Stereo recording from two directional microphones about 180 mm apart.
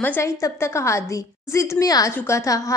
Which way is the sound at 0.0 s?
15° left (ahead or behind).